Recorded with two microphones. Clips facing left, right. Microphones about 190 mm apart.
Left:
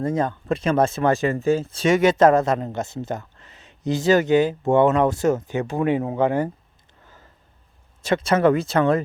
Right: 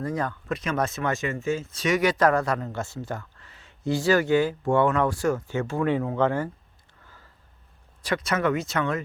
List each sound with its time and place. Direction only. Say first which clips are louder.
0.0 s speech: left 6 dB; 25° left (ahead or behind)
8.0 s speech: left 7 dB; 25° left (ahead or behind)